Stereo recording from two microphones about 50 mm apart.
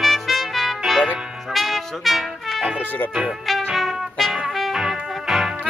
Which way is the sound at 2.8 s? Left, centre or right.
Left.